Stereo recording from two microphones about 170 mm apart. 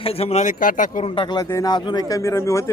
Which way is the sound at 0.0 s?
35° left (ahead or behind).